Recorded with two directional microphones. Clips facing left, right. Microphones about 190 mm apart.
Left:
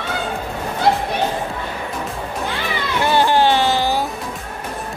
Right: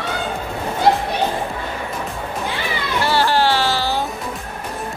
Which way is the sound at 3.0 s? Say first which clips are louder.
Left 2 dB; 20° left (ahead or behind).